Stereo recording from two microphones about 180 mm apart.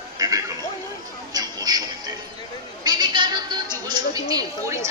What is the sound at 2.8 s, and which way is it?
A woman's voice, 25° right (ahead or behind).